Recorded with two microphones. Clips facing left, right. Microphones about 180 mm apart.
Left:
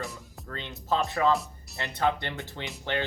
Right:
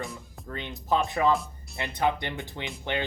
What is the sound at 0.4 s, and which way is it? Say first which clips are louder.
Speech: right 2 dB; 15° right (ahead or behind).